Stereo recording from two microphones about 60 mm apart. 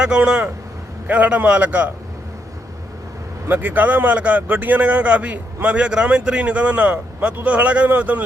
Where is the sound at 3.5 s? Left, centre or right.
Right.